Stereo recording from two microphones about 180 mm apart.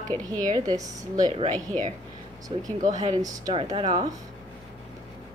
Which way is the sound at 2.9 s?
20° right (ahead or behind).